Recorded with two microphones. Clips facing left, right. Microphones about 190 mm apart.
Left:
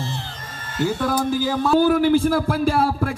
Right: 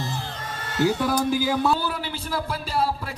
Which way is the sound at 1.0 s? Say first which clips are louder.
Left 2 dB; 10° right (ahead or behind).